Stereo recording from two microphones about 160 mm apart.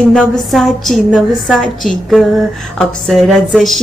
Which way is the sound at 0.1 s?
Centre (ahead or behind).